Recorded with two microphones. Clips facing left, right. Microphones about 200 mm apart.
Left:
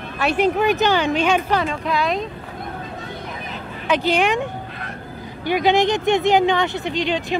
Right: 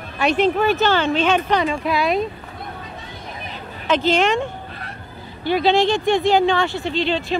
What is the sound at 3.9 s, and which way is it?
Speech, 15° left (ahead or behind).